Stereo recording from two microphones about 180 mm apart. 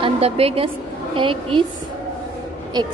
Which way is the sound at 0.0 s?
35° right (ahead or behind).